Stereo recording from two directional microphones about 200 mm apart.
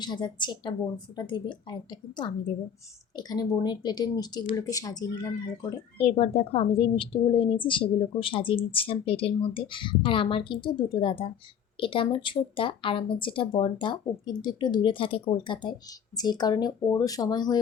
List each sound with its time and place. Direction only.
0.0 s a woman's voice: 20° left (ahead or behind)
6.0 s a woman's voice: 30° left (ahead or behind)